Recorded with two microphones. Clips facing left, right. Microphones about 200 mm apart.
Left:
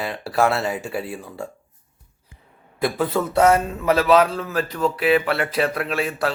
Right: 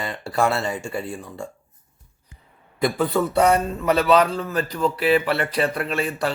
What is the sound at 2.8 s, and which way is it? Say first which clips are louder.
A man's voice: right 1 dB; centre (ahead or behind).